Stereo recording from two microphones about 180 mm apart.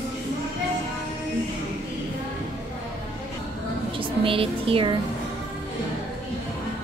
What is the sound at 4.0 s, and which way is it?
Speech, 30° right (ahead or behind).